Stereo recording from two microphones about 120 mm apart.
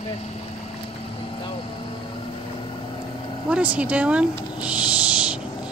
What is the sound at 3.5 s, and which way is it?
A woman's voice, 10° right (ahead or behind).